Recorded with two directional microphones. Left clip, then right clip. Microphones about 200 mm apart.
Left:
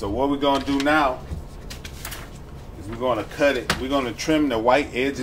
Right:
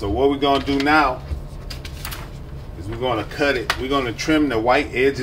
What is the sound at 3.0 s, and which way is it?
Speech, 15° left (ahead or behind).